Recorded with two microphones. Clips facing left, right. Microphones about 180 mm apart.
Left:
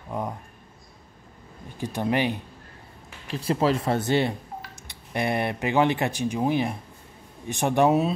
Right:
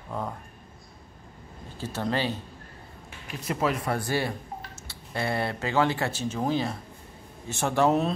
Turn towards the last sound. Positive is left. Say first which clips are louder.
# left 3 dB
turn(degrees=15)  # may be behind; listen again after turning